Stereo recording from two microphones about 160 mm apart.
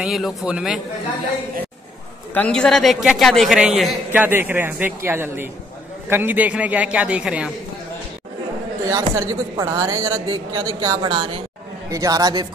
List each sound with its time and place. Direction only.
0.0 s a man's voice: centre (ahead or behind)
2.3 s a man's voice: 5° left (ahead or behind)
8.8 s speech: 20° right (ahead or behind)